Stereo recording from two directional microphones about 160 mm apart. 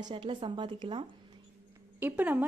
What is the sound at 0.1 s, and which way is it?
Speech, 30° right (ahead or behind).